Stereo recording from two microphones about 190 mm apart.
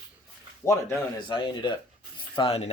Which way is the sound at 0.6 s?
15° left (ahead or behind).